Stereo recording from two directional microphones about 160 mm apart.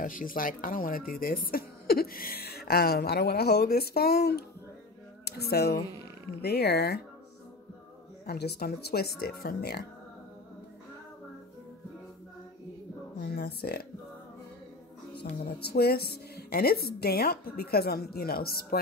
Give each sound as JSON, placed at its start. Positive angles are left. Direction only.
{"t": 0.0, "sound": "speech", "side_deg": 60}
{"t": 8.3, "sound": "speech", "side_deg": 90}
{"t": 13.2, "sound": "a sound", "side_deg": 85}
{"t": 15.2, "sound": "speech", "side_deg": 90}